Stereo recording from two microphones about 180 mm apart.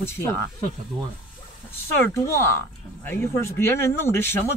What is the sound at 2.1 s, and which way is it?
Speech, 15° left (ahead or behind).